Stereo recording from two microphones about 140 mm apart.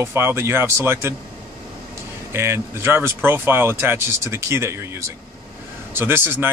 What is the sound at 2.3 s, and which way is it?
Speech, 20° right (ahead or behind).